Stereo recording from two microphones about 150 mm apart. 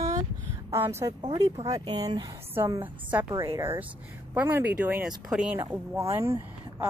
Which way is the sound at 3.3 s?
20° right (ahead or behind).